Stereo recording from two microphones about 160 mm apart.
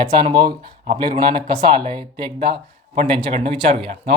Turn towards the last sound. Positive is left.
turn(degrees=-35)  # may be behind; listen again after turning